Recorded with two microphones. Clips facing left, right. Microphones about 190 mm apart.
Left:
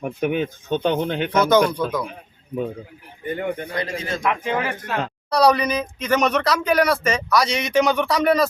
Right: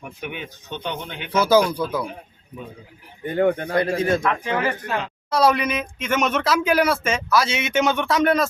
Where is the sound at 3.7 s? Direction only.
60° right (ahead or behind).